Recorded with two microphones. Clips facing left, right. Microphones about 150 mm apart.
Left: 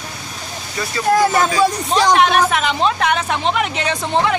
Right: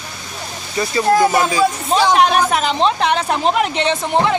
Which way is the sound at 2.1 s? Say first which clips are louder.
Even; 35° right (ahead or behind).